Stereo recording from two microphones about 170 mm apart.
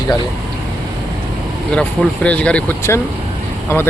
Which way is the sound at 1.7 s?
10° left (ahead or behind).